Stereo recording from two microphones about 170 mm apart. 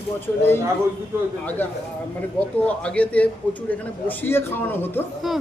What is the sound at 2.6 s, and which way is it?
A man's voice, 10° left (ahead or behind).